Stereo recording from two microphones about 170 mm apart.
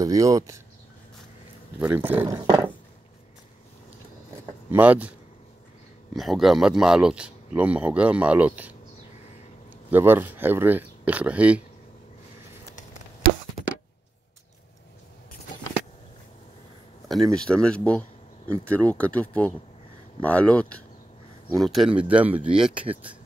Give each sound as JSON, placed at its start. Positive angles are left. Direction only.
{"t": 0.0, "sound": "speech", "side_deg": -20}
{"t": 1.8, "sound": "speech", "side_deg": -10}
{"t": 4.6, "sound": "speech", "side_deg": -10}
{"t": 6.1, "sound": "speech", "side_deg": 0}
{"t": 9.8, "sound": "speech", "side_deg": -10}
{"t": 17.1, "sound": "speech", "side_deg": 5}